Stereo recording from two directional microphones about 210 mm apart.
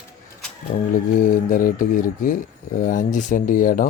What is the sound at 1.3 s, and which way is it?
Speech, 40° left (ahead or behind).